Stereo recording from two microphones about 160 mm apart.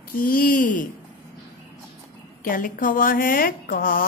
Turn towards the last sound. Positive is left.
turn(degrees=60)  # may be behind; listen again after turning